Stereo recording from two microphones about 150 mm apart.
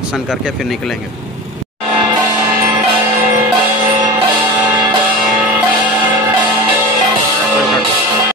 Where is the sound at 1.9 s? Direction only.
30° right (ahead or behind).